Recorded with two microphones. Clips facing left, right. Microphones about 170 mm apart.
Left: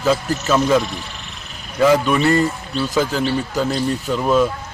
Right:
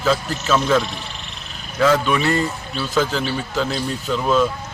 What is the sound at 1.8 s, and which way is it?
A man's voice, 10° left (ahead or behind).